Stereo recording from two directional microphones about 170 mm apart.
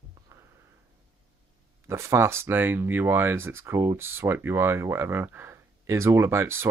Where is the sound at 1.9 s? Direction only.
15° right (ahead or behind).